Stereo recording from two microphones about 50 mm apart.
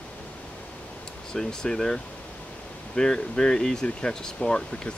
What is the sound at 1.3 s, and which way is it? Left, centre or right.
Speech, centre.